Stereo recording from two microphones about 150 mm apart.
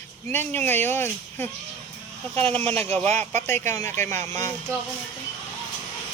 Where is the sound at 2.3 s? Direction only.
40° right (ahead or behind).